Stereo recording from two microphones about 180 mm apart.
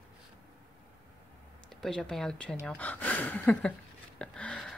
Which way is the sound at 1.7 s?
Centre (ahead or behind).